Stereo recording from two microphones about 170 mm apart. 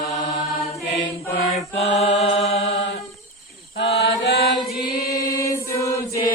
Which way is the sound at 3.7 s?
85° left.